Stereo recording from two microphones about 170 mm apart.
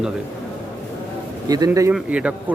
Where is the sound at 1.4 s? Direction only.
20° right (ahead or behind).